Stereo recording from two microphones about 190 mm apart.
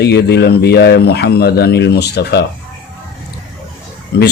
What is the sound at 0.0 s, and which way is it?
Speech, 60° left (ahead or behind).